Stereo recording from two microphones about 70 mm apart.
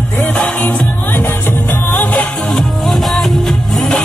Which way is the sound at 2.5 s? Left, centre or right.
Centre.